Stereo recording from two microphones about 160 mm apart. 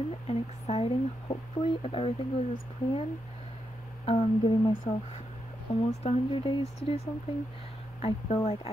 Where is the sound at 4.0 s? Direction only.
40° left (ahead or behind).